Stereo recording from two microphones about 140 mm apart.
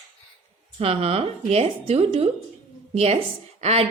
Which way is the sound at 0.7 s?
45° right (ahead or behind).